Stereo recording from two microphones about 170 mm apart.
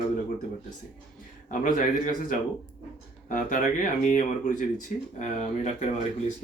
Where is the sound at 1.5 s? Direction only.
55° left (ahead or behind).